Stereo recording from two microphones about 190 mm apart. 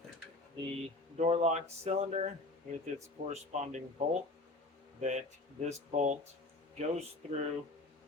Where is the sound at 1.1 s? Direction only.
35° right (ahead or behind).